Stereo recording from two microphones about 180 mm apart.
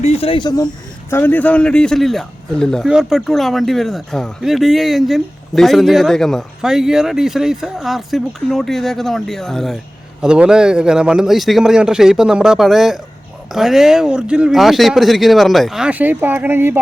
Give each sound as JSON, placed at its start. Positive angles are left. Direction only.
{"t": 0.0, "sound": "speech", "side_deg": 35}
{"t": 1.1, "sound": "speech", "side_deg": 10}